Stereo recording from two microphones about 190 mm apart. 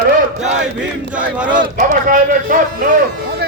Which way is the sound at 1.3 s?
5° right (ahead or behind).